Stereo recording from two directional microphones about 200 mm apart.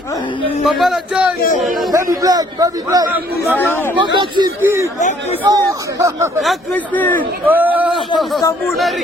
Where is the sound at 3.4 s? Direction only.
10° left (ahead or behind).